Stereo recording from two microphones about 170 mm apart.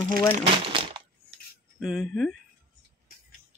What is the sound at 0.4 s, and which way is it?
Crumpling, 30° right (ahead or behind).